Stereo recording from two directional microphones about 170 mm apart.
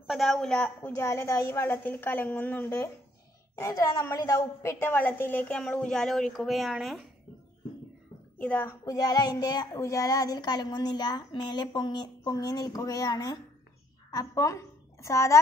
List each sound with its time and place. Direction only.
0.0 s a woman's voice: centre (ahead or behind)
8.4 s a woman's voice: 10° left (ahead or behind)